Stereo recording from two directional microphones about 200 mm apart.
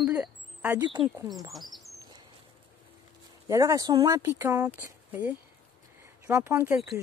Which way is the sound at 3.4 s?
15° right (ahead or behind).